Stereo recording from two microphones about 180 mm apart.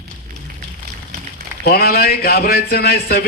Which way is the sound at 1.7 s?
60° left (ahead or behind).